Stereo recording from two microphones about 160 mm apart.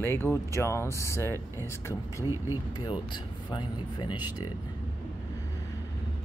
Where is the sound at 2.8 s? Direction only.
30° left (ahead or behind).